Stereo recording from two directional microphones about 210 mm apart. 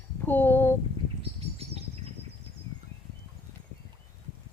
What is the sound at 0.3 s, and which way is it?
Speech, 10° left (ahead or behind).